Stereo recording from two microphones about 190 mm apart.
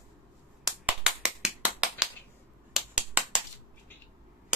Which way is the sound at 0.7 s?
5° right (ahead or behind).